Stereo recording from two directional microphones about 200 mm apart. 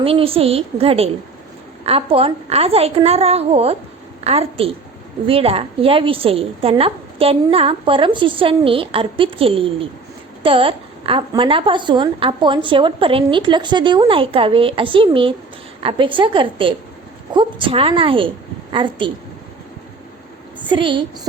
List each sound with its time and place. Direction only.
0.0 s a woman's voice: 30° right (ahead or behind)
20.6 s a woman's voice: 25° right (ahead or behind)